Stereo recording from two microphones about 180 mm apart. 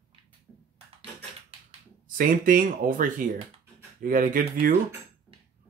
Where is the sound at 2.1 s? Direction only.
50° right (ahead or behind).